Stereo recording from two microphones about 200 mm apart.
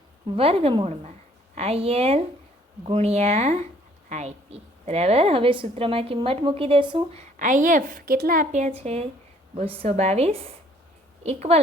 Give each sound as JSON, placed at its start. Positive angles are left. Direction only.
{"t": 0.3, "sound": "a woman's voice", "side_deg": -30}